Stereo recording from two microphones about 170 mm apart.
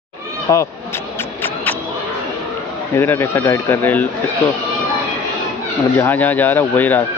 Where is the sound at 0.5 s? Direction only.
20° left (ahead or behind).